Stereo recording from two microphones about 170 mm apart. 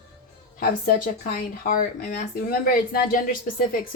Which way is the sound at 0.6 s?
55° left (ahead or behind).